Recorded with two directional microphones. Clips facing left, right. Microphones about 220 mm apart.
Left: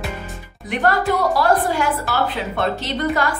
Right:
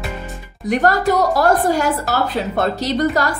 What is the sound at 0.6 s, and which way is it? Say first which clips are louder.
A woman's voice: right 3 dB; 40° right (ahead or behind).